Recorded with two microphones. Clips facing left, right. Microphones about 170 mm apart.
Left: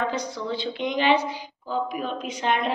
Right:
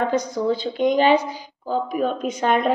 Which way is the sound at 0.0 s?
45° right (ahead or behind).